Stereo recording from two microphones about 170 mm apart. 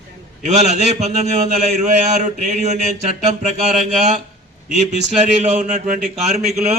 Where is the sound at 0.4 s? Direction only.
45° right (ahead or behind).